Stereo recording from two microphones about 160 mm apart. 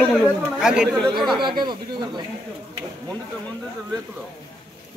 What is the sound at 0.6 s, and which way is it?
Speech, 5° right (ahead or behind).